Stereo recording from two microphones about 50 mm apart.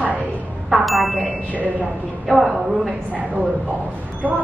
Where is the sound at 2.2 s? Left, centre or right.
Centre.